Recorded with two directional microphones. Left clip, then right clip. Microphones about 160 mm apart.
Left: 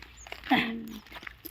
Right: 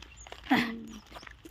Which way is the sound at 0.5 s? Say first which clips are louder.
Left 2 dB; 15° right (ahead or behind).